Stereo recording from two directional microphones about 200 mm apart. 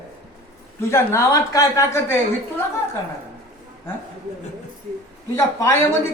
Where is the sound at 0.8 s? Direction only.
15° left (ahead or behind).